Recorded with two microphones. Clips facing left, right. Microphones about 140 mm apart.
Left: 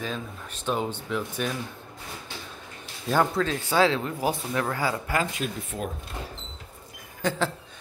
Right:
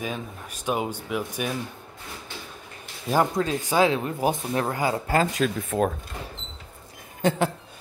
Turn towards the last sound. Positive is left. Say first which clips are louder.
# right 4 dB
turn(degrees=-20)  # may be behind; listen again after turning